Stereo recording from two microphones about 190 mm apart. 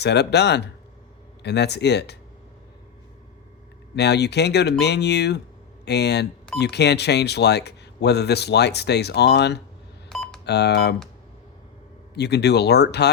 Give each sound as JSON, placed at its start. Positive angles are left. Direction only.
{"t": 0.0, "sound": "speech", "side_deg": 60}
{"t": 3.9, "sound": "speech", "side_deg": 60}
{"t": 10.1, "sound": "telephone dialing", "side_deg": 0}
{"t": 10.4, "sound": "speech", "side_deg": 60}
{"t": 12.1, "sound": "speech", "side_deg": 60}